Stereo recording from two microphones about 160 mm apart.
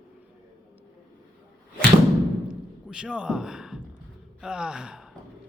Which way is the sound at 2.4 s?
5° right (ahead or behind).